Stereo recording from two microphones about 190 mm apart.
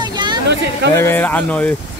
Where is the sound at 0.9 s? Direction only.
10° left (ahead or behind).